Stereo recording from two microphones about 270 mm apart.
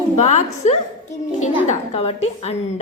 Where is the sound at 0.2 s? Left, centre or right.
Left.